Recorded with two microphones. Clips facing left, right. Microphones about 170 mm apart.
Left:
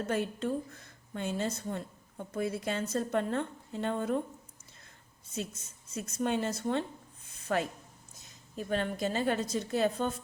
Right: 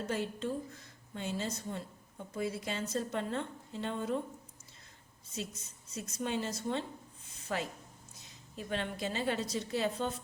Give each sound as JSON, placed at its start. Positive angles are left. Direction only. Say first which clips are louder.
{"t": 0.1, "sound": "a woman's voice", "louder": "left 4 dB", "side_deg": 55}
{"t": 5.9, "sound": "a woman's voice", "louder": "left 5 dB", "side_deg": 55}
{"t": 8.5, "sound": "a woman's voice", "louder": "left 5 dB", "side_deg": 45}